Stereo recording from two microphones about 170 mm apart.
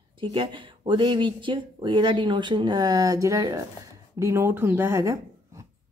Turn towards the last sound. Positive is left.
turn(degrees=-15)  # may be behind; listen again after turning